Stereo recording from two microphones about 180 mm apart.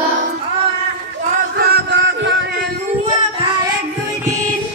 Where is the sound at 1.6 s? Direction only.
70° right (ahead or behind).